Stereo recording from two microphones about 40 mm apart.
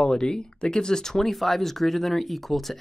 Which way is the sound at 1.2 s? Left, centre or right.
Centre.